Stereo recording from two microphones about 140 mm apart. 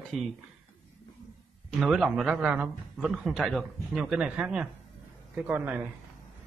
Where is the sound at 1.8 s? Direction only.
5° right (ahead or behind).